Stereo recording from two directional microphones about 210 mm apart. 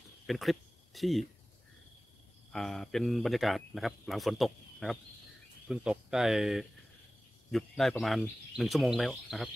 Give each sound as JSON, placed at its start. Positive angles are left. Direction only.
{"t": 0.3, "sound": "speech", "side_deg": 0}
{"t": 2.5, "sound": "speech", "side_deg": 0}